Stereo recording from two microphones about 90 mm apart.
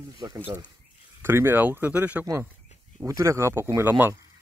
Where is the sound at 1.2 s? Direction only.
25° right (ahead or behind).